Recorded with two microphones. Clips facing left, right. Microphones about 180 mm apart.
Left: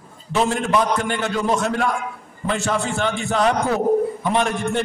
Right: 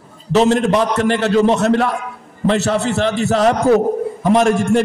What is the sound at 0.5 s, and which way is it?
Speech, 40° right (ahead or behind).